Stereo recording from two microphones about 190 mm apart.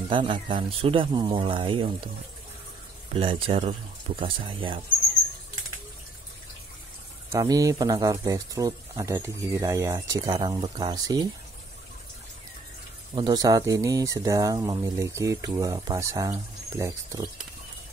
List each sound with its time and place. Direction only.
0.1 s speech: 25° right (ahead or behind)
3.1 s speech: 30° right (ahead or behind)
7.2 s speech: 20° right (ahead or behind)
13.1 s speech: 25° right (ahead or behind)